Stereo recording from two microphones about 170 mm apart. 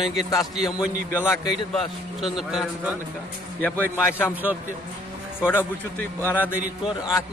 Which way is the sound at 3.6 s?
10° left (ahead or behind).